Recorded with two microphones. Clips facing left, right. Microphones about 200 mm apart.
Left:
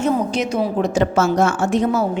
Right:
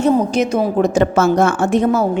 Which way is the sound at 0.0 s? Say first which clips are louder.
Right 5 dB; 45° right (ahead or behind).